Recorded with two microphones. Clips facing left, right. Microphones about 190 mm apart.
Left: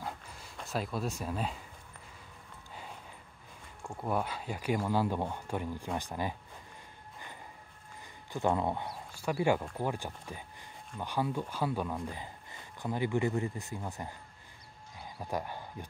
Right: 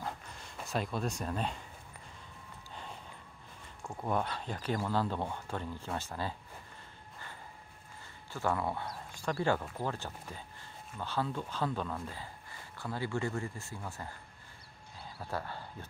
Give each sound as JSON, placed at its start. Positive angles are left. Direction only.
{"t": 0.0, "sound": "dog", "side_deg": 5}
{"t": 3.8, "sound": "speech", "side_deg": 0}
{"t": 8.3, "sound": "speech", "side_deg": 20}
{"t": 15.0, "sound": "a sound", "side_deg": 15}